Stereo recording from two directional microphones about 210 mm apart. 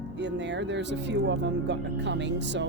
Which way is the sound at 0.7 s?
60° right (ahead or behind).